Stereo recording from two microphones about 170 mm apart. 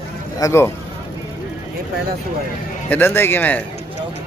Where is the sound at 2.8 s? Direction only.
10° left (ahead or behind).